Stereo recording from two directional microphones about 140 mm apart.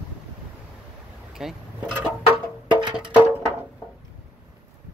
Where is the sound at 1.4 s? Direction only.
5° right (ahead or behind).